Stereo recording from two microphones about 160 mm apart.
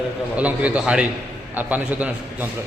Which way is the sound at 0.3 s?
10° right (ahead or behind).